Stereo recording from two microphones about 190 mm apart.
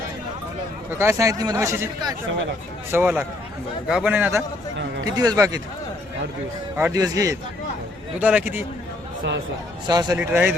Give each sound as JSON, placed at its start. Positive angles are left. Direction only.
{"t": 0.9, "sound": "speech", "side_deg": -15}
{"t": 6.7, "sound": "speech", "side_deg": -15}
{"t": 8.2, "sound": "speech", "side_deg": -10}
{"t": 9.8, "sound": "speech", "side_deg": -20}
{"t": 10.2, "sound": "speech", "side_deg": -10}